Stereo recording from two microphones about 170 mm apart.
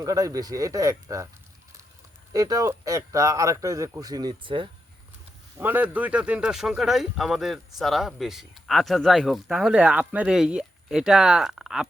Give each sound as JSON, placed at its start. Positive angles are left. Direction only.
{"t": 0.0, "sound": "speech", "side_deg": -20}
{"t": 2.3, "sound": "speech", "side_deg": -20}
{"t": 5.5, "sound": "speech", "side_deg": -10}